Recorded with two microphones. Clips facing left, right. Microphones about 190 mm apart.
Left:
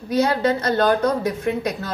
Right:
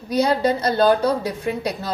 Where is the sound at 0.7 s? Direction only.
30° right (ahead or behind).